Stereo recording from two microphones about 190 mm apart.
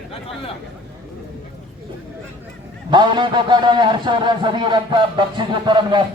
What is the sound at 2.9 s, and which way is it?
A man's voice, 25° right (ahead or behind).